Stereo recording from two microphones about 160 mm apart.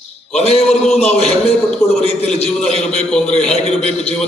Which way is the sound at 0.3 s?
40° left (ahead or behind).